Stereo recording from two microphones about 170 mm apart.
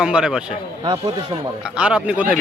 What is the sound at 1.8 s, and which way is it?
Speech, 5° right (ahead or behind).